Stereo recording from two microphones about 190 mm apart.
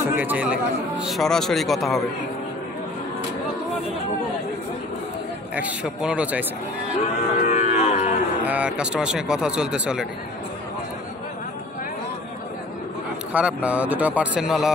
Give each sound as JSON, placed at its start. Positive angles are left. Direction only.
{"t": 0.0, "sound": "a man's voice", "side_deg": -10}
{"t": 5.6, "sound": "speech", "side_deg": -5}
{"t": 7.3, "sound": "cattle", "side_deg": 40}
{"t": 8.4, "sound": "a man's voice", "side_deg": -5}
{"t": 13.3, "sound": "speech", "side_deg": -5}